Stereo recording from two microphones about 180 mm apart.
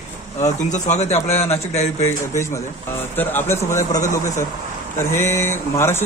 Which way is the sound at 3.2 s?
10° left (ahead or behind).